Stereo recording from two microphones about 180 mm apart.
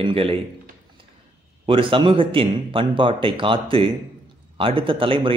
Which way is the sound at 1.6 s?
30° right (ahead or behind).